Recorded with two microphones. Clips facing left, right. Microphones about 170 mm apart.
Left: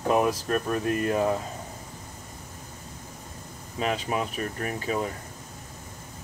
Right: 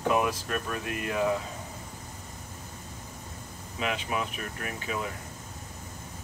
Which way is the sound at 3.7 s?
40° left (ahead or behind).